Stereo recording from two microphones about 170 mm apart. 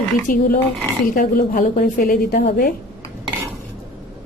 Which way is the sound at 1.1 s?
60° left (ahead or behind).